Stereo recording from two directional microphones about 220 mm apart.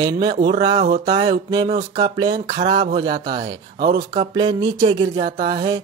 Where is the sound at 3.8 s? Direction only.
45° right (ahead or behind).